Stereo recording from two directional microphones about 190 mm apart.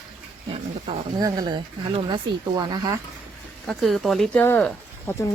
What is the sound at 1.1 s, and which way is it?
Speech, 20° right (ahead or behind).